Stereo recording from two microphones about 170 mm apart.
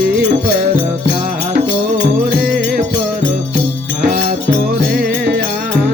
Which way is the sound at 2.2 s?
60° right (ahead or behind).